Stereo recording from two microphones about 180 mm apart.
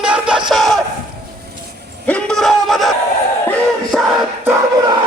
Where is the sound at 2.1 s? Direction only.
5° left (ahead or behind).